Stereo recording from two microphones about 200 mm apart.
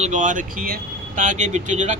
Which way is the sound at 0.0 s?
40° right (ahead or behind).